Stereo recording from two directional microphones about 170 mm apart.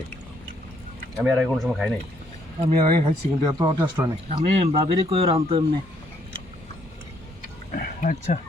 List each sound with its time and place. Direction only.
1.1 s speech: 5° right (ahead or behind)
2.6 s speech: 35° right (ahead or behind)
3.4 s speech: 20° right (ahead or behind)
4.3 s speech: 35° right (ahead or behind)
7.7 s a sound: 50° left (ahead or behind)